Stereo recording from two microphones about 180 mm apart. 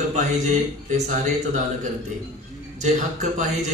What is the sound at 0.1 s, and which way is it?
A man's voice, 40° right (ahead or behind).